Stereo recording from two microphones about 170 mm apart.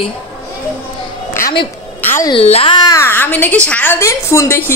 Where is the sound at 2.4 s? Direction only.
35° left (ahead or behind).